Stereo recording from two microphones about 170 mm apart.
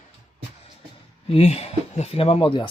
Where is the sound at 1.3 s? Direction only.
35° left (ahead or behind).